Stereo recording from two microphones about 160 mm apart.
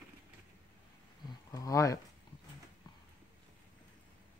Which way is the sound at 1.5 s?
20° left (ahead or behind).